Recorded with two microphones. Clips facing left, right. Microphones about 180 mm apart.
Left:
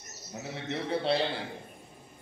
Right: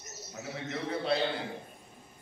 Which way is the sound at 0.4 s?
30° left (ahead or behind).